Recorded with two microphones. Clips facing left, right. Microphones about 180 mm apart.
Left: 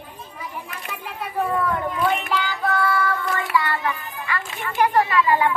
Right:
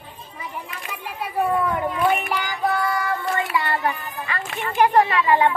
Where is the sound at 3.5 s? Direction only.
25° right (ahead or behind).